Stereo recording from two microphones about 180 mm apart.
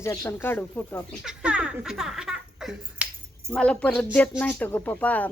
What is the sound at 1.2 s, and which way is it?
Laughter, 5° right (ahead or behind).